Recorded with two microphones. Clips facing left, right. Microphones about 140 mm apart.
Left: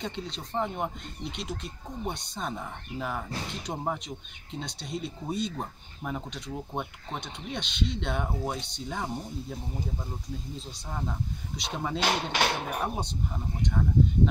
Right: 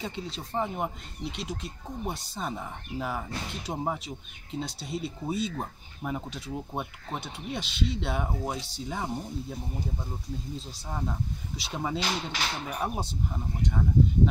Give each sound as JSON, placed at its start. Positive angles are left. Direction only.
{"t": 0.0, "sound": "speech", "side_deg": -5}
{"t": 10.9, "sound": "speech", "side_deg": -5}
{"t": 12.0, "sound": "speech", "side_deg": 60}
{"t": 12.8, "sound": "speech", "side_deg": -5}